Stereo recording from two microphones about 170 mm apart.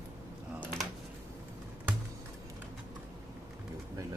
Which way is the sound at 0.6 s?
5° right (ahead or behind).